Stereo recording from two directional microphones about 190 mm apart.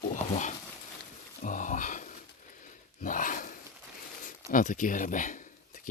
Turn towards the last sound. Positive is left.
turn(degrees=40)  # may be behind; listen again after turning